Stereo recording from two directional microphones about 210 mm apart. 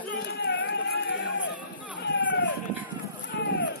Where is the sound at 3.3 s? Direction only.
60° left (ahead or behind).